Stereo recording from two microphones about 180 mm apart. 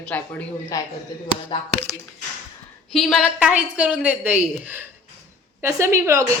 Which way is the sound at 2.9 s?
Centre (ahead or behind).